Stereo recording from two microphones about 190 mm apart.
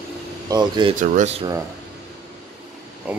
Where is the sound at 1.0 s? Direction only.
40° right (ahead or behind).